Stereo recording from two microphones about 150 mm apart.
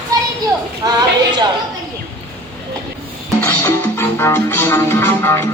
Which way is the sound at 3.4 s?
15° left (ahead or behind).